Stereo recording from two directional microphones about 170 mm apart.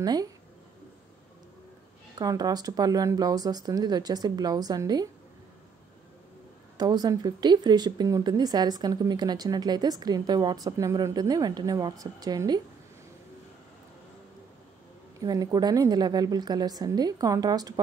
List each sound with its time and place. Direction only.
0.0 s speech: 20° right (ahead or behind)
2.1 s speech: 20° right (ahead or behind)
6.8 s speech: 25° right (ahead or behind)
15.1 s speech: 20° right (ahead or behind)